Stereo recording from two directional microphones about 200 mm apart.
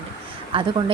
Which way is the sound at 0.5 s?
25° right (ahead or behind).